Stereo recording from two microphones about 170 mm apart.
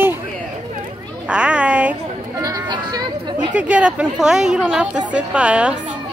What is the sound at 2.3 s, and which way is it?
Chatter, 20° right (ahead or behind).